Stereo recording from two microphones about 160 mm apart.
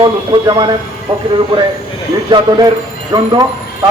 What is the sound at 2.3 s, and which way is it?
Speech, 30° right (ahead or behind).